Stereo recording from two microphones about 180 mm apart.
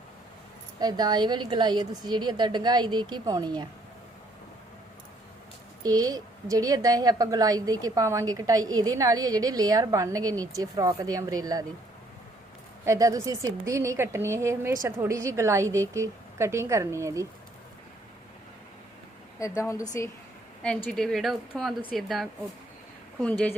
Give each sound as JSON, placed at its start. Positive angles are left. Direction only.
{"t": 0.8, "sound": "a woman's voice", "side_deg": -20}
{"t": 5.8, "sound": "a woman's voice", "side_deg": -20}
{"t": 12.8, "sound": "a woman's voice", "side_deg": -15}
{"t": 19.4, "sound": "a woman's voice", "side_deg": 15}
{"t": 20.6, "sound": "a woman's voice", "side_deg": 5}